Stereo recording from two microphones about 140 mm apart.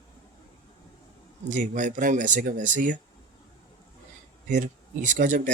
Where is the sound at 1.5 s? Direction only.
65° right (ahead or behind).